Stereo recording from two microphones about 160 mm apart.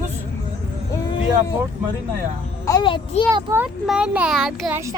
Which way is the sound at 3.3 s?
15° right (ahead or behind).